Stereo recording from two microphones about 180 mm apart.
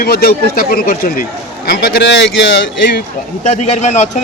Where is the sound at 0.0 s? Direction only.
65° left (ahead or behind).